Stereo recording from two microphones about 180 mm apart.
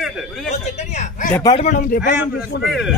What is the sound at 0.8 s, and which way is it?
Speech, 40° left (ahead or behind).